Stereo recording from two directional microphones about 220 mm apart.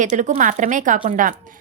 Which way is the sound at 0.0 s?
35° right (ahead or behind).